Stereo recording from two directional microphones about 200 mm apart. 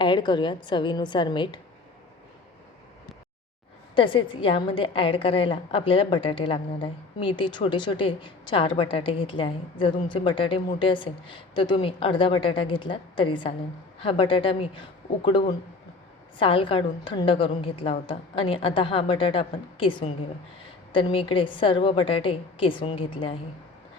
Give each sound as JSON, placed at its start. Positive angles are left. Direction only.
{"t": 0.0, "sound": "a woman's voice", "side_deg": 25}
{"t": 3.9, "sound": "a woman's voice", "side_deg": 25}